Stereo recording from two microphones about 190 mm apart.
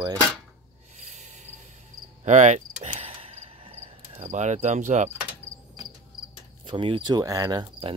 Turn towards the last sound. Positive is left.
turn(degrees=-20)  # may be behind; listen again after turning